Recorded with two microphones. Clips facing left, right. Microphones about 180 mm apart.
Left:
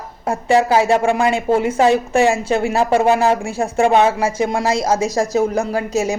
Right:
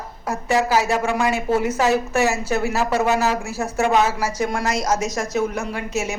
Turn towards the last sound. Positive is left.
turn(degrees=35)  # may be behind; listen again after turning